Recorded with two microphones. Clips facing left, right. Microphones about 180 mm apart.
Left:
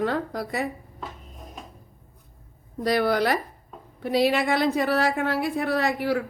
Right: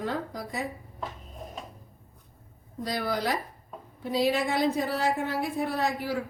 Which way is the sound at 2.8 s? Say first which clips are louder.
Left 7 dB; 75° left (ahead or behind).